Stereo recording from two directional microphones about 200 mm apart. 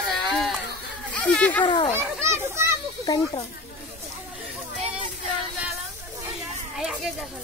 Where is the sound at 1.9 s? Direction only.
15° right (ahead or behind).